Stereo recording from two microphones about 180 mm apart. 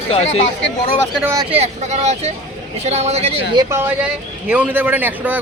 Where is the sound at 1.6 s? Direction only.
40° right (ahead or behind).